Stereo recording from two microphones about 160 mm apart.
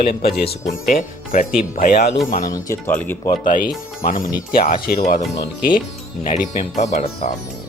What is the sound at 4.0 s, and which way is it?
Speech, 60° left (ahead or behind).